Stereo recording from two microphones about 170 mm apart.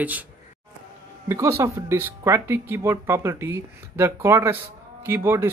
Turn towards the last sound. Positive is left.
turn(degrees=-15)  # may be behind; listen again after turning